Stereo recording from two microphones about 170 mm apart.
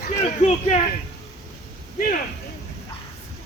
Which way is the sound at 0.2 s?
40° left (ahead or behind).